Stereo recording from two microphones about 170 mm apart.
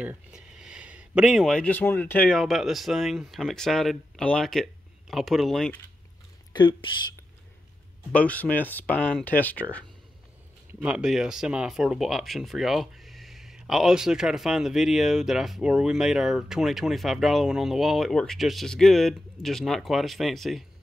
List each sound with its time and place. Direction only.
0.0 s speech: 5° right (ahead or behind)
6.5 s speech: 25° left (ahead or behind)
8.1 s speech: 10° left (ahead or behind)
10.7 s speech: 5° right (ahead or behind)